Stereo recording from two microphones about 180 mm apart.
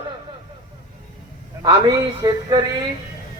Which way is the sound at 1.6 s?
20° right (ahead or behind).